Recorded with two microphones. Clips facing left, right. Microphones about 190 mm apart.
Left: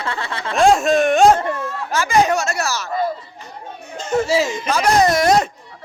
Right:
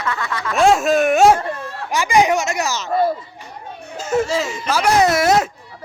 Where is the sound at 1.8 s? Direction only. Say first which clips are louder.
Right 1 dB; 15° right (ahead or behind).